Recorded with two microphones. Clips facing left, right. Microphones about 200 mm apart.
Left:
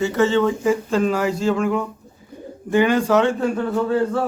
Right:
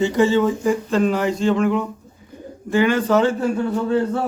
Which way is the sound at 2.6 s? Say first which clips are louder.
Left 1 dB; 15° left (ahead or behind).